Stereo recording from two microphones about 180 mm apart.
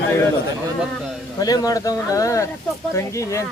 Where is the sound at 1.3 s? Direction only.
20° left (ahead or behind).